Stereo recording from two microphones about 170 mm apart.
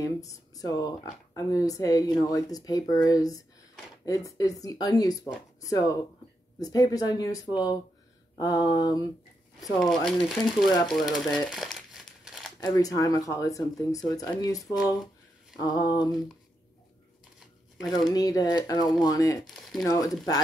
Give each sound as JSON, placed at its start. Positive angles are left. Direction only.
{"t": 0.0, "sound": "speech", "side_deg": 20}
{"t": 9.6, "sound": "speech", "side_deg": 5}
{"t": 10.9, "sound": "crumpling", "side_deg": 0}
{"t": 12.6, "sound": "speech", "side_deg": 25}
{"t": 17.9, "sound": "speech", "side_deg": 20}
{"t": 19.4, "sound": "speech", "side_deg": 0}